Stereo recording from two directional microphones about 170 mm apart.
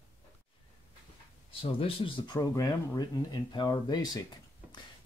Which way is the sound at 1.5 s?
35° left (ahead or behind).